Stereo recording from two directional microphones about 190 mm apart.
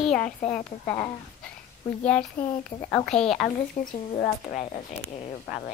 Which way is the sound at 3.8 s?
40° left (ahead or behind).